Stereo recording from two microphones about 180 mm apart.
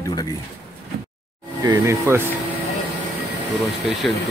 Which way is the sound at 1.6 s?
15° right (ahead or behind).